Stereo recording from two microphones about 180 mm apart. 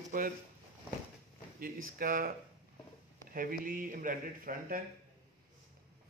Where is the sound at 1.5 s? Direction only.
50° right (ahead or behind).